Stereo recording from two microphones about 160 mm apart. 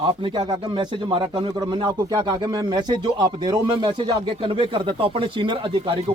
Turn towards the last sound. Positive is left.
turn(degrees=-35)  # may be behind; listen again after turning